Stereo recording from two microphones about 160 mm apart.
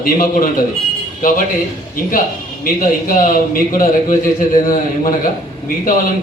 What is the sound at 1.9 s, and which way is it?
Speech, 60° left (ahead or behind).